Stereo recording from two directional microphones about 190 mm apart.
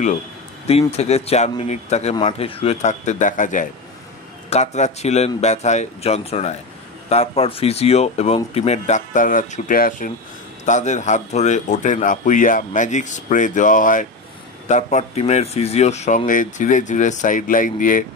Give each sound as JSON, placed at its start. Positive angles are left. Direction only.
{"t": 0.7, "sound": "a man's voice", "side_deg": 35}